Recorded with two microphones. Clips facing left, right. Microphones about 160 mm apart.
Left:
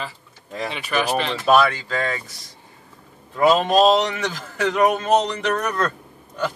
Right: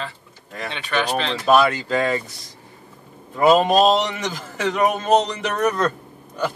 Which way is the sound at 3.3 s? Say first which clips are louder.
Right 1 dB; 10° right (ahead or behind).